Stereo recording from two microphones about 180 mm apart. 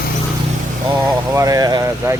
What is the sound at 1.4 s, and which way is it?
Vehicle, 20° right (ahead or behind).